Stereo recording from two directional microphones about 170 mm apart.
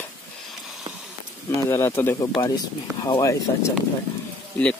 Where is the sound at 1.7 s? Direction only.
15° left (ahead or behind).